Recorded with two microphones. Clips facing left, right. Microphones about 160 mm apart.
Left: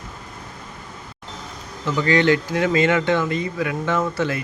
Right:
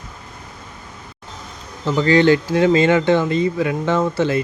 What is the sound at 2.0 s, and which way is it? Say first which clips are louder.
Speech: right 4 dB; 30° right (ahead or behind).